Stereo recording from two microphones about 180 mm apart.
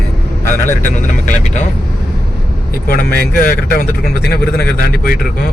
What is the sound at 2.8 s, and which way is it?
Speech, 55° left (ahead or behind).